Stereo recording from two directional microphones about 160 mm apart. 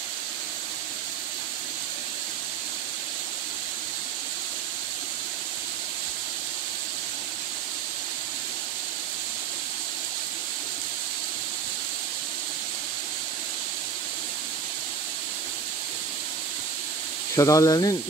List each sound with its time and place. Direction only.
17.4 s speech: 20° left (ahead or behind)